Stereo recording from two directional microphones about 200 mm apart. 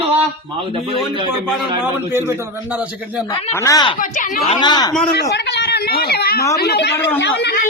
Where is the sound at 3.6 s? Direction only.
15° left (ahead or behind).